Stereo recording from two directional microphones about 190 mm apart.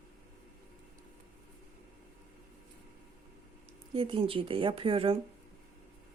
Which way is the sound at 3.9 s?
30° right (ahead or behind).